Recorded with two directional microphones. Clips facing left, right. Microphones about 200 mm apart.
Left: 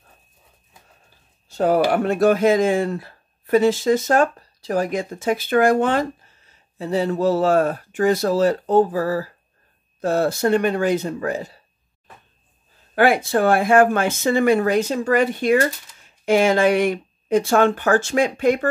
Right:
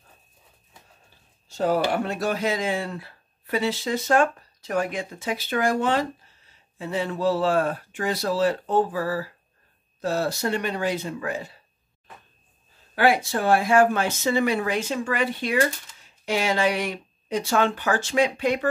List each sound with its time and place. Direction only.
1.5 s speech: 55° left (ahead or behind)
6.8 s speech: 40° left (ahead or behind)
10.0 s speech: 50° left (ahead or behind)
12.9 s speech: 55° left (ahead or behind)